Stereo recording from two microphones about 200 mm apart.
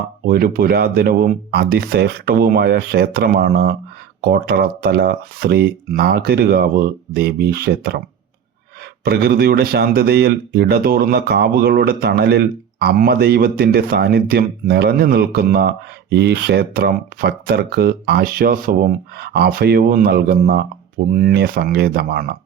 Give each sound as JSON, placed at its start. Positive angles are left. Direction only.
{"t": 0.3, "sound": "speech", "side_deg": -50}
{"t": 9.0, "sound": "speech", "side_deg": -55}